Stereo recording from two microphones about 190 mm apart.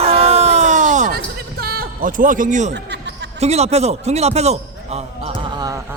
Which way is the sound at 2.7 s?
65° right (ahead or behind).